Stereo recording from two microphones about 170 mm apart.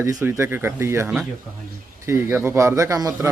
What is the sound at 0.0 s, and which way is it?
A man's voice, 15° right (ahead or behind).